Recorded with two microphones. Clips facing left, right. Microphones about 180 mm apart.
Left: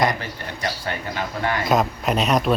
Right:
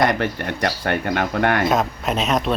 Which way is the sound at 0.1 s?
65° right (ahead or behind).